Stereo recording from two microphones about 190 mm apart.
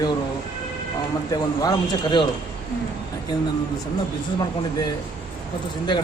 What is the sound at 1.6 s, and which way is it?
Speech, 25° left (ahead or behind).